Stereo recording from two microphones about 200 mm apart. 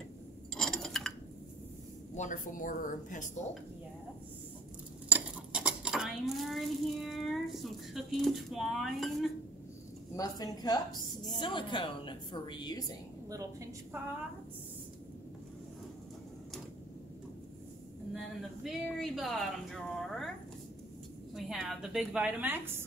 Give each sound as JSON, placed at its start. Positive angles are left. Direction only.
{"t": 0.6, "sound": "chink", "side_deg": 5}
{"t": 2.1, "sound": "a woman's voice", "side_deg": 40}
{"t": 5.1, "sound": "dishes", "side_deg": -5}
{"t": 10.1, "sound": "a woman's voice", "side_deg": 20}
{"t": 18.1, "sound": "speech", "side_deg": 0}
{"t": 21.4, "sound": "speech", "side_deg": 0}